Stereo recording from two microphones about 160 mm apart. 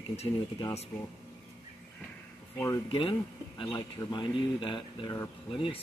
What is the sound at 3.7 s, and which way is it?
Speech, 25° left (ahead or behind).